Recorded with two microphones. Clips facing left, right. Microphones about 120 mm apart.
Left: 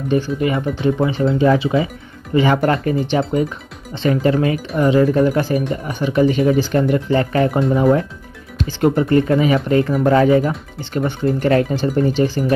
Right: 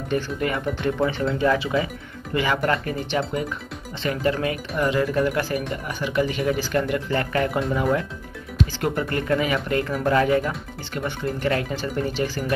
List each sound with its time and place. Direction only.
0.1 s speech: 20° left (ahead or behind)